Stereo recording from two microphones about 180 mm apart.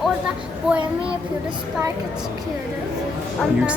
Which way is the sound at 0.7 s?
5° right (ahead or behind).